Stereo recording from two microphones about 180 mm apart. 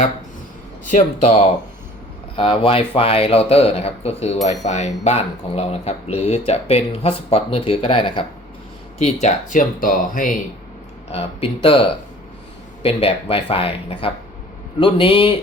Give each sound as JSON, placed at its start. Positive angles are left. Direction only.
{"t": 0.9, "sound": "speech", "side_deg": 40}
{"t": 9.2, "sound": "speech", "side_deg": 45}
{"t": 11.1, "sound": "a man's voice", "side_deg": 30}